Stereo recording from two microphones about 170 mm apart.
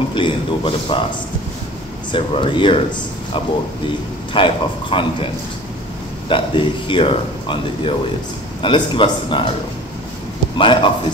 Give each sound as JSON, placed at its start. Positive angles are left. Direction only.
{"t": 0.1, "sound": "a man's voice", "side_deg": 30}
{"t": 2.1, "sound": "speech", "side_deg": 30}
{"t": 4.3, "sound": "a man's voice", "side_deg": 30}
{"t": 10.6, "sound": "a man's voice", "side_deg": 30}